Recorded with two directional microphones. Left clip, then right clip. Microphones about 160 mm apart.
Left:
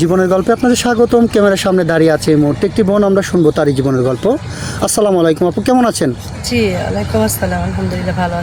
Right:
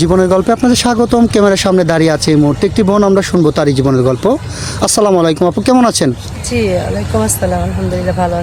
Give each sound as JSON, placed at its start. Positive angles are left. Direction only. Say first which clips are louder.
{"t": 0.0, "sound": "speech", "louder": "right 2 dB", "side_deg": -25}